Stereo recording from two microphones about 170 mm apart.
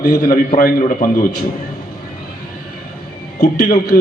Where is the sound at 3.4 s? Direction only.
60° left (ahead or behind).